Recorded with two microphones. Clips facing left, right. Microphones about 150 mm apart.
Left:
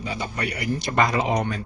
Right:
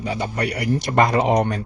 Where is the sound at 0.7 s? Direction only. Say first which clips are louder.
Right 4 dB; 65° right (ahead or behind).